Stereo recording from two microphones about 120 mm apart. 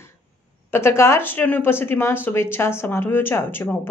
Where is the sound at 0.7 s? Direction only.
20° left (ahead or behind).